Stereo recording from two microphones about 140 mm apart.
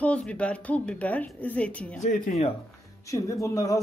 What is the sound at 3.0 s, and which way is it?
Speech, 25° left (ahead or behind).